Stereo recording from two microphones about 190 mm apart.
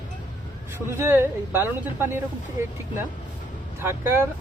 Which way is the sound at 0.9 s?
15° right (ahead or behind).